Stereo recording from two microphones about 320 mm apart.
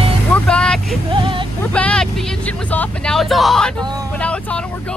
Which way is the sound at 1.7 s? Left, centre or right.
Centre.